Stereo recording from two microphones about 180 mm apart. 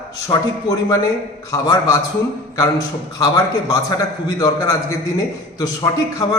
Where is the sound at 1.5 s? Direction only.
20° left (ahead or behind).